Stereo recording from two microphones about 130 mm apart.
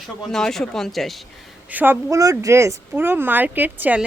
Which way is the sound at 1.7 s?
15° right (ahead or behind).